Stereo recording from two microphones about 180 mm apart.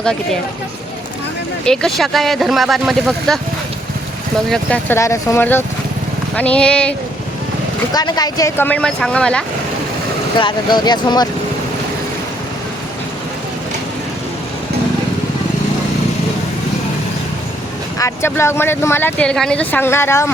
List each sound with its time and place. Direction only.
1.6 s speech: 5° left (ahead or behind)
4.4 s speech: 5° left (ahead or behind)
7.9 s speech: 20° left (ahead or behind); by 9.4 s 5° left (ahead or behind)
10.3 s speech: 25° left (ahead or behind)
17.9 s speech: 15° left (ahead or behind)